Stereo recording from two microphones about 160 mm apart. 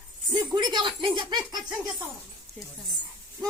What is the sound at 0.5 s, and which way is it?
Speech, 30° right (ahead or behind).